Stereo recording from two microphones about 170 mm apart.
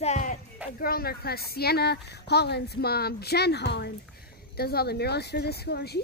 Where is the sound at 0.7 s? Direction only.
60° left (ahead or behind); by 3.9 s 80° left.